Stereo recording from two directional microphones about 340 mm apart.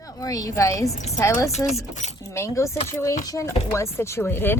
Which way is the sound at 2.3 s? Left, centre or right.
Centre.